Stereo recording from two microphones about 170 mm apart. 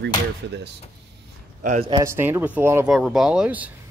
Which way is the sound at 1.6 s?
50° right (ahead or behind).